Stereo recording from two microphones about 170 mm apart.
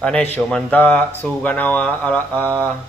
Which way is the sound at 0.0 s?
10° left (ahead or behind).